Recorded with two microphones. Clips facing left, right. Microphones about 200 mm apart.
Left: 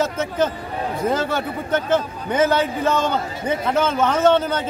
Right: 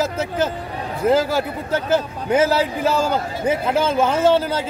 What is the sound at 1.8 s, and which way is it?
A man's voice, 10° right (ahead or behind).